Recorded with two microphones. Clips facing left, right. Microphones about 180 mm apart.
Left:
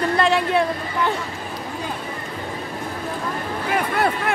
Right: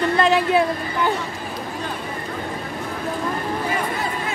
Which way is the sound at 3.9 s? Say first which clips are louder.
Left 5 dB; 65° left (ahead or behind).